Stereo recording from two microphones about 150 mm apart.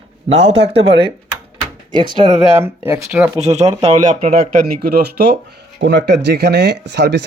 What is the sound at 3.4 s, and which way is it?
Speech, 45° right (ahead or behind).